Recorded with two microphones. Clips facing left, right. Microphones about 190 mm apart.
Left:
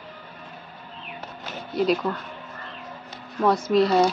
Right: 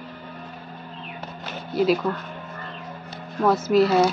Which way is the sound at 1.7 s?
5° right (ahead or behind).